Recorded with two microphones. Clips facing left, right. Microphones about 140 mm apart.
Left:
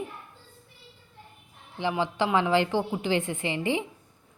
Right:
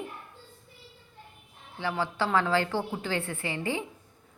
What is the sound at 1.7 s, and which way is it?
A woman's voice, 20° left (ahead or behind).